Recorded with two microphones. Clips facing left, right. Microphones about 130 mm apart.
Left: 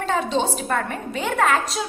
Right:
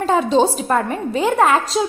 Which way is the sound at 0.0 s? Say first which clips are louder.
Right 7 dB; 40° right (ahead or behind).